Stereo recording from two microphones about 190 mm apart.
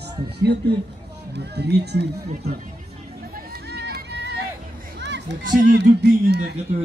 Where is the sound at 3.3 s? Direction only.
60° right (ahead or behind).